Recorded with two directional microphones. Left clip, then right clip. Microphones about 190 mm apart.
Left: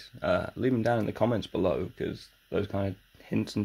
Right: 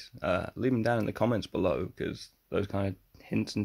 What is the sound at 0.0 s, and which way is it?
Speech, 15° right (ahead or behind).